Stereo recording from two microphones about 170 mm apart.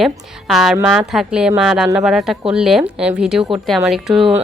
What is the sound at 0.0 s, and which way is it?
A woman's voice, centre (ahead or behind).